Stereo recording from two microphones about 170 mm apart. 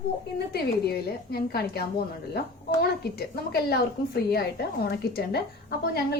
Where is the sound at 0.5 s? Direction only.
70° left (ahead or behind).